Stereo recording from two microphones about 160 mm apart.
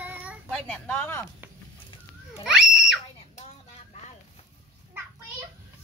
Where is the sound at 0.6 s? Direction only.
10° left (ahead or behind).